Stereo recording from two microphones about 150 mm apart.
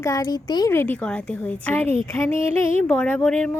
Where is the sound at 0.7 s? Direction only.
10° left (ahead or behind).